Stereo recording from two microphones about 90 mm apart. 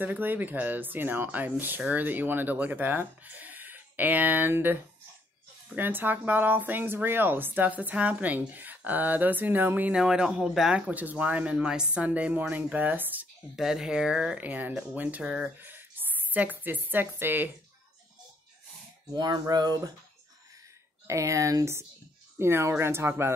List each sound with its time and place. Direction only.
0.0 s speech: 20° right (ahead or behind)
9.9 s speech: 10° right (ahead or behind)
10.9 s speech: 15° right (ahead or behind)
13.6 s speech: 5° right (ahead or behind)
15.6 s a woman's voice: 20° right (ahead or behind)
19.1 s speech: 50° right (ahead or behind)
21.1 s speech: 35° right (ahead or behind)